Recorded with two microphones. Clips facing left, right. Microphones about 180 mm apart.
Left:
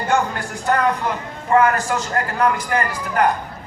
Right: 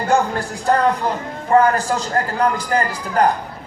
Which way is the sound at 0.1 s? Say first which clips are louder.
Right 2 dB; 35° right (ahead or behind).